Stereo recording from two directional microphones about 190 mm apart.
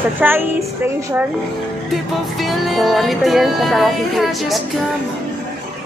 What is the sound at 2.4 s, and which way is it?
A woman's voice, centre (ahead or behind).